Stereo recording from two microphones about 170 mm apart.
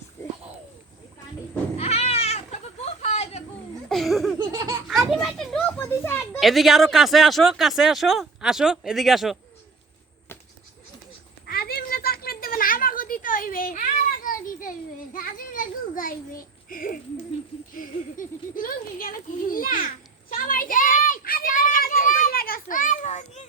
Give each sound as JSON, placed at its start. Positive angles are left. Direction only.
{"t": 1.8, "sound": "goat", "side_deg": 40}
{"t": 3.8, "sound": "a sound", "side_deg": 0}
{"t": 4.4, "sound": "laughter", "side_deg": -20}
{"t": 5.1, "sound": "children playing", "side_deg": 0}
{"t": 6.4, "sound": "speech", "side_deg": 0}
{"t": 11.4, "sound": "a sound", "side_deg": 65}
{"t": 14.3, "sound": "children playing", "side_deg": 55}
{"t": 15.1, "sound": "a sound", "side_deg": 55}
{"t": 17.7, "sound": "a child's voice", "side_deg": 55}
{"t": 20.3, "sound": "children playing", "side_deg": 55}